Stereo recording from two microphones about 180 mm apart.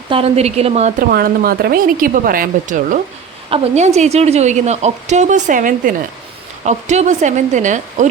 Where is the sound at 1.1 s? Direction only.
55° right (ahead or behind).